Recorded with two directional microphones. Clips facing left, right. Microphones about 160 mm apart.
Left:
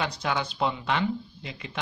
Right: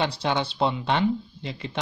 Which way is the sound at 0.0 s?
30° right (ahead or behind).